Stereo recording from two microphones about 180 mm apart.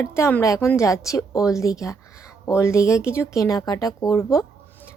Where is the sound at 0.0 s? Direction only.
15° left (ahead or behind).